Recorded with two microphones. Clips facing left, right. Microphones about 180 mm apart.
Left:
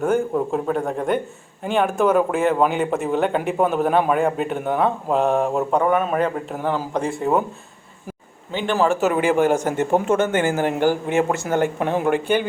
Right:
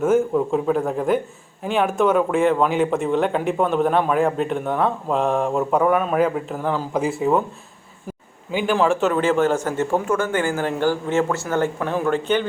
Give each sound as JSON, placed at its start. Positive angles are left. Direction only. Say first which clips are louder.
{"t": 0.0, "sound": "a man's voice", "louder": "right 2 dB", "side_deg": 0}
{"t": 8.7, "sound": "speech", "louder": "even", "side_deg": 5}